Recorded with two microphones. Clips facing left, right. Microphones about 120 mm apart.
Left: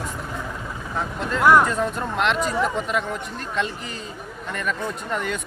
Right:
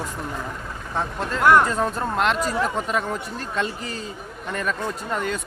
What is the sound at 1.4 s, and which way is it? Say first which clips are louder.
Speech: even; 5° left (ahead or behind).